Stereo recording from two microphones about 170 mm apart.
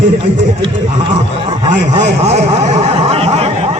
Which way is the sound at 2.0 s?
40° right (ahead or behind).